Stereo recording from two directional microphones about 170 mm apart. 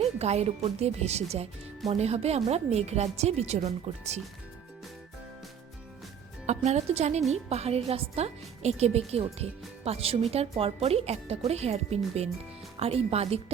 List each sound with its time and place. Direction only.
0.0 s speech: 40° right (ahead or behind)
6.4 s speech: 40° right (ahead or behind)